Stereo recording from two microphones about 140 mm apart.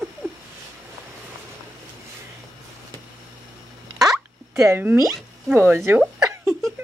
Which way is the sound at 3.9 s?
5° right (ahead or behind).